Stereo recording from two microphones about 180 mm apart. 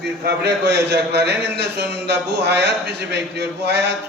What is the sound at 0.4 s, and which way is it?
A man's voice, 65° right (ahead or behind).